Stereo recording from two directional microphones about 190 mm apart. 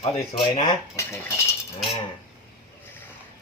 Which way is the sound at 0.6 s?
20° left (ahead or behind).